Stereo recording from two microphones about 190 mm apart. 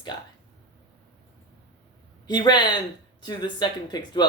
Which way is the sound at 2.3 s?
20° left (ahead or behind).